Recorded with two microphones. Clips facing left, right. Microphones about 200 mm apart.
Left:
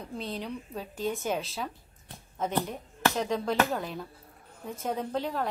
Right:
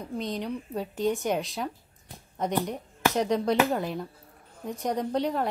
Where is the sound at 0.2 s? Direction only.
15° right (ahead or behind).